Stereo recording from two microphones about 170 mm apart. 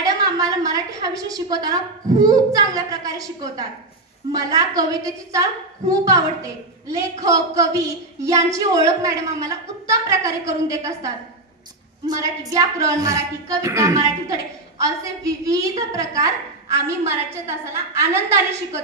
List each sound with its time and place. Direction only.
0.0 s a woman's voice: 20° right (ahead or behind)
12.1 s a woman's voice: 20° right (ahead or behind)